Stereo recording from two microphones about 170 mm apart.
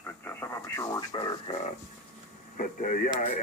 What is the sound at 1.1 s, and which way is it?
Speech, 30° left (ahead or behind).